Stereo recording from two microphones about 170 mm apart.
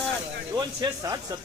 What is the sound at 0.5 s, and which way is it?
Speech, 20° right (ahead or behind).